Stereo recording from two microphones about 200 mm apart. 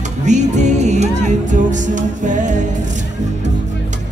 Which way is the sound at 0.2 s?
35° right (ahead or behind).